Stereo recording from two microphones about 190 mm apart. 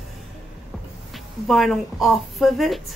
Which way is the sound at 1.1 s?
Centre (ahead or behind).